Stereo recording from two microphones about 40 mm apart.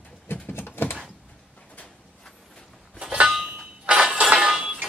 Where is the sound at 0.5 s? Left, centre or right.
Left.